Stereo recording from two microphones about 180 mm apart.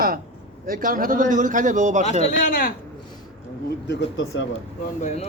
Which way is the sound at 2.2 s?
50° left (ahead or behind).